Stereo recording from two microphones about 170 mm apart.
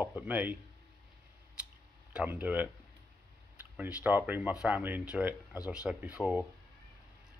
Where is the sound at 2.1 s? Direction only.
10° right (ahead or behind).